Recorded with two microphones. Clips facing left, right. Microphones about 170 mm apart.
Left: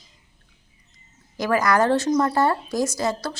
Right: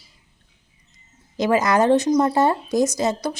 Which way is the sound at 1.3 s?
20° right (ahead or behind).